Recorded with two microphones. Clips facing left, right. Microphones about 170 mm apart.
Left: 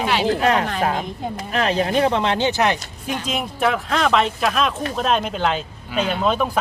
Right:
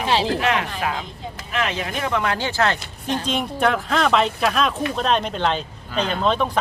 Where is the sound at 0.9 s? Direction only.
50° left (ahead or behind).